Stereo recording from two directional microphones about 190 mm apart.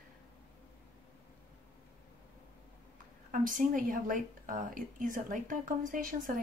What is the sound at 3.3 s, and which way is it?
A woman's voice, 45° right (ahead or behind).